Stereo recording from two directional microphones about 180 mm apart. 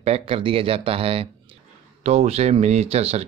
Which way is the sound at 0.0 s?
35° right (ahead or behind).